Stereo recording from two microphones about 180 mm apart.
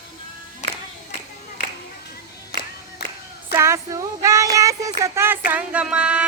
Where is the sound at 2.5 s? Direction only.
65° left (ahead or behind).